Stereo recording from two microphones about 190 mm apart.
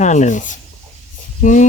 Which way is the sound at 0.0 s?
40° left (ahead or behind).